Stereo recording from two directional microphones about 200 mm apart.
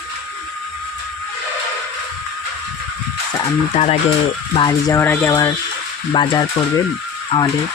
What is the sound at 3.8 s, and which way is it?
Speech, 30° left (ahead or behind).